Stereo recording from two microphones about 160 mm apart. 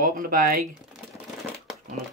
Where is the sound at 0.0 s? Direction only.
60° right (ahead or behind).